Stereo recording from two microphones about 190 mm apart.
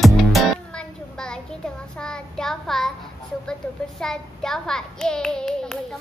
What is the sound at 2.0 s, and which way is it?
Child singing, 5° left (ahead or behind).